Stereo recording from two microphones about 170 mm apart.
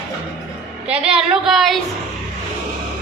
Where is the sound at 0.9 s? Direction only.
5° right (ahead or behind).